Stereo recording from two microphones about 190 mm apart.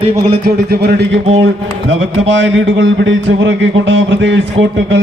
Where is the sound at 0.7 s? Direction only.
60° right (ahead or behind).